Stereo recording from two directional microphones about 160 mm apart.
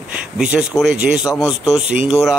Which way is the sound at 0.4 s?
5° right (ahead or behind).